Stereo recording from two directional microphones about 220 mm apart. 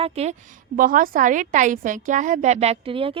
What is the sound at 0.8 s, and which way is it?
A woman's voice, 40° right (ahead or behind).